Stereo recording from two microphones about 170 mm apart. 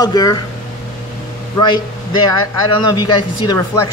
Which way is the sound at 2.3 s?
25° left (ahead or behind).